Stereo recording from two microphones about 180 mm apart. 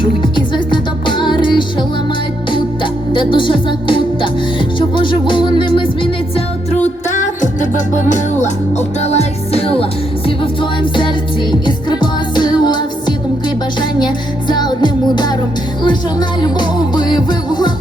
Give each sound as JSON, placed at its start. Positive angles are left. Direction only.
{"t": 0.3, "sound": "music", "side_deg": 25}
{"t": 3.1, "sound": "speech", "side_deg": 30}
{"t": 4.9, "sound": "music", "side_deg": 25}
{"t": 6.8, "sound": "music", "side_deg": 45}
{"t": 16.4, "sound": "music", "side_deg": 25}